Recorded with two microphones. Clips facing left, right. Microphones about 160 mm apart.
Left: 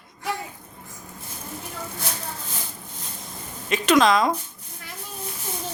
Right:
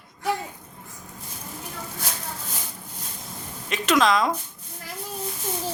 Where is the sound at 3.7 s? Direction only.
Centre (ahead or behind).